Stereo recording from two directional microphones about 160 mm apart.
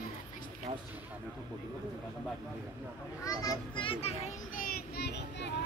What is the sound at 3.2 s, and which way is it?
Speech, 20° left (ahead or behind).